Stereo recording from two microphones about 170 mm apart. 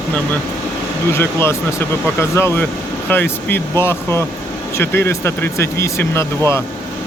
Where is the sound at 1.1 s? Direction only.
15° left (ahead or behind).